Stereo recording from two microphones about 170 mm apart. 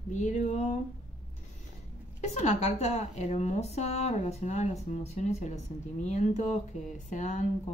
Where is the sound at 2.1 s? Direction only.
40° left (ahead or behind).